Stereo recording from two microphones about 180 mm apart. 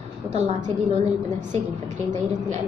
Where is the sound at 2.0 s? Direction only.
45° right (ahead or behind).